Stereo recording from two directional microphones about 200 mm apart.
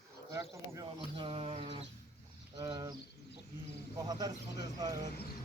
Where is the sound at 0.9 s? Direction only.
25° right (ahead or behind).